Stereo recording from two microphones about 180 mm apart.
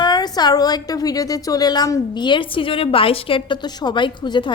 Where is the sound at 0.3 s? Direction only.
20° left (ahead or behind).